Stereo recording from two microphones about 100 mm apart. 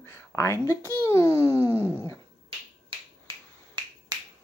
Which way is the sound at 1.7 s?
15° right (ahead or behind).